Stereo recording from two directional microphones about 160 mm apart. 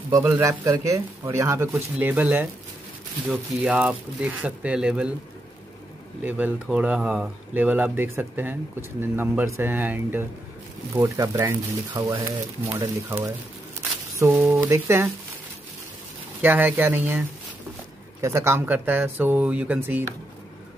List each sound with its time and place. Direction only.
0.2 s speech: 15° right (ahead or behind)
6.2 s speech: 10° right (ahead or behind)
16.3 s speech: 10° right (ahead or behind)
18.2 s speech: 15° right (ahead or behind)